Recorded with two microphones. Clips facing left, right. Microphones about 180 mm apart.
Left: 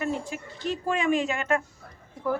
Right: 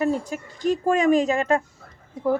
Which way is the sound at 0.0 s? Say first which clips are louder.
Right 6 dB; 40° right (ahead or behind).